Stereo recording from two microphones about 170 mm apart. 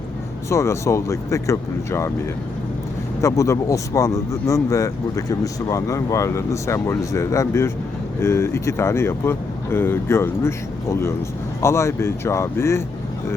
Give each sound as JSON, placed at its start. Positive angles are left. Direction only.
{"t": 0.5, "sound": "speech", "side_deg": 15}
{"t": 3.2, "sound": "speech", "side_deg": 20}